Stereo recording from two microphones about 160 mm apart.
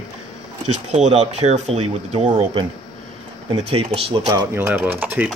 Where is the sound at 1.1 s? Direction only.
45° right (ahead or behind).